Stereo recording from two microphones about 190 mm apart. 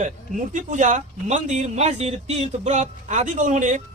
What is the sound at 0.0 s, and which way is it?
Speech, 40° right (ahead or behind).